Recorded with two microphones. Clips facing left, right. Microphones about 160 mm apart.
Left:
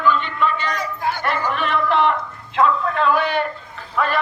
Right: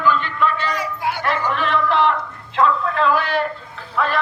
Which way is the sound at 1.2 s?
Centre (ahead or behind).